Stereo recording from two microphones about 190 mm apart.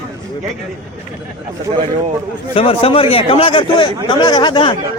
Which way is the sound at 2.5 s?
30° left (ahead or behind).